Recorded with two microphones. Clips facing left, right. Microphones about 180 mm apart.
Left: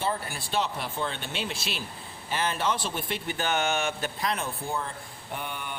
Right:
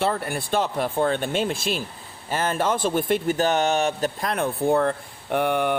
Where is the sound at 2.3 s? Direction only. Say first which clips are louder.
Right 5 dB; 45° right (ahead or behind).